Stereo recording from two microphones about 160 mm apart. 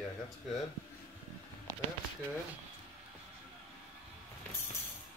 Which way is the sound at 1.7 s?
20° right (ahead or behind).